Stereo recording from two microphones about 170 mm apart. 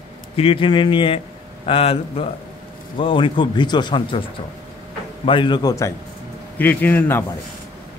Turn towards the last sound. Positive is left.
turn(degrees=10)  # may be behind; listen again after turning